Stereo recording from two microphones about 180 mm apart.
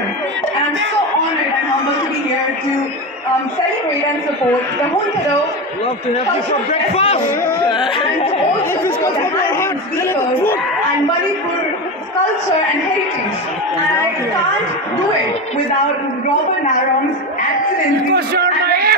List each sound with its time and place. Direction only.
6.7 s a man's voice: 35° left (ahead or behind)
7.6 s a sound: 30° left (ahead or behind)
18.1 s a man's voice: 60° right (ahead or behind)